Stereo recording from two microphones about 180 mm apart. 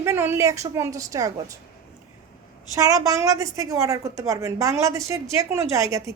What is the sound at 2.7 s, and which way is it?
A woman's voice, 20° right (ahead or behind).